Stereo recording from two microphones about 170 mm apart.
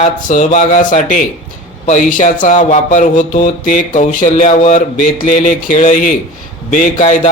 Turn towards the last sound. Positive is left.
turn(degrees=45)  # may be behind; listen again after turning